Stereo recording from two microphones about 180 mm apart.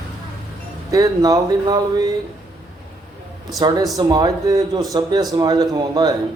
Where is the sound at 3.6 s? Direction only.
20° right (ahead or behind).